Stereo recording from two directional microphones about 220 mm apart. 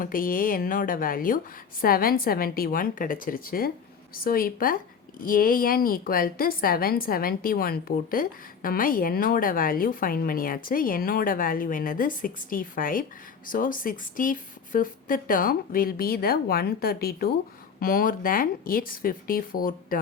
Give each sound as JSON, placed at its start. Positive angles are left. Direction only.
{"t": 0.0, "sound": "a woman's voice", "side_deg": 40}